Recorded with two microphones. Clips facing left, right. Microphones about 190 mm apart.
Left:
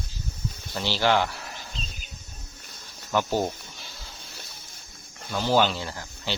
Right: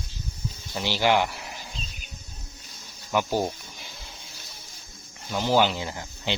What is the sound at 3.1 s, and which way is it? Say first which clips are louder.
Snake: even; 10° right (ahead or behind).